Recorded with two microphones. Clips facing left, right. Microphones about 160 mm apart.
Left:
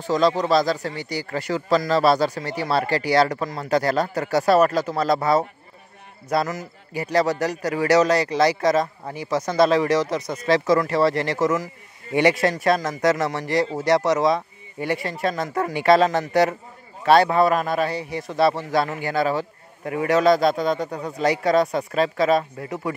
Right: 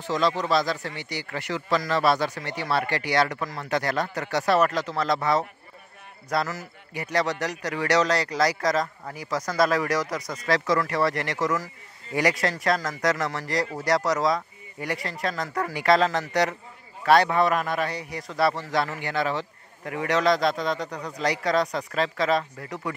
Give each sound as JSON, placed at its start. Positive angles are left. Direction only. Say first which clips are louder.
{"t": 0.0, "sound": "a man's voice", "louder": "left 5 dB", "side_deg": 35}